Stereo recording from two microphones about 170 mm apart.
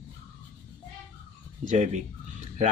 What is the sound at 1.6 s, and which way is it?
Speech, 45° right (ahead or behind).